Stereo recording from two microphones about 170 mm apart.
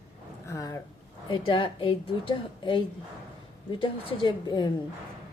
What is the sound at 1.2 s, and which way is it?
A woman's voice, 30° left (ahead or behind).